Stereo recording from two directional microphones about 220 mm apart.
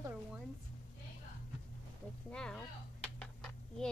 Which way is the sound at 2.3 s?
5° left (ahead or behind).